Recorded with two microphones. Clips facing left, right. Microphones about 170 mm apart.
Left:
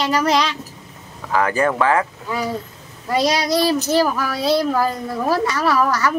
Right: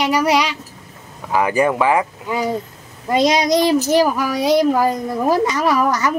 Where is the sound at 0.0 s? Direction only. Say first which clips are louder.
Right 2 dB; 10° right (ahead or behind).